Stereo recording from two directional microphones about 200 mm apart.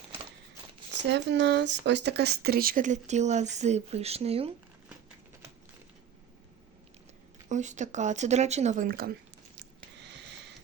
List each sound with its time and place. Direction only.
1.0 s speech: 60° right (ahead or behind); by 4.5 s 30° right (ahead or behind)
7.4 s speech: 35° right (ahead or behind)
9.6 s a sound: 60° right (ahead or behind)